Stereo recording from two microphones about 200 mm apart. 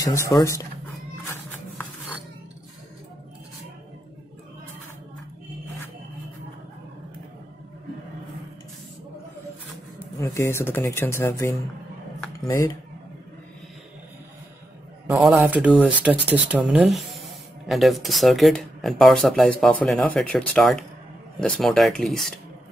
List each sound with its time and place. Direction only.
0.3 s speech: 15° left (ahead or behind)
10.2 s speech: 15° left (ahead or behind)
15.0 s speech: 5° right (ahead or behind)